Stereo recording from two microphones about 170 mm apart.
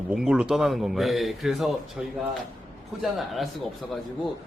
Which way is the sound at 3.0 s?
Centre (ahead or behind).